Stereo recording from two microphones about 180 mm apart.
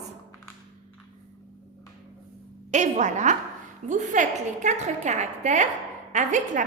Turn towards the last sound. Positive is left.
turn(degrees=-45)  # may be behind; listen again after turning